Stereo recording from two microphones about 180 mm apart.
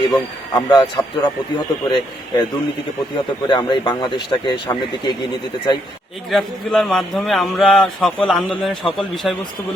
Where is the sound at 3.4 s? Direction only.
25° left (ahead or behind).